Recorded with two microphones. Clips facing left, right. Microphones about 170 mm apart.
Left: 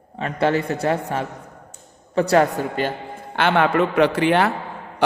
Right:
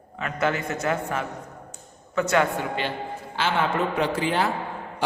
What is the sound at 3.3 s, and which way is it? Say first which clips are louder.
A man's voice: left 7 dB; 60° left (ahead or behind).